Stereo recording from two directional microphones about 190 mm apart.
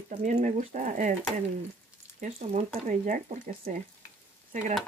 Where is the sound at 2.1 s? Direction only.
45° right (ahead or behind).